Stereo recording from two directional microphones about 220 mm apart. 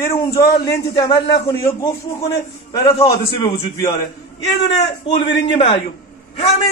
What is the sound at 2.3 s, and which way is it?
A man's voice, 15° left (ahead or behind).